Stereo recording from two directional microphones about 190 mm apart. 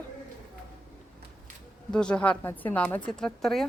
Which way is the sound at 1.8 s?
5° left (ahead or behind).